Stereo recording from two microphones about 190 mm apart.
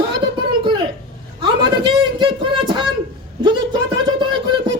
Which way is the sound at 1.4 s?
25° right (ahead or behind).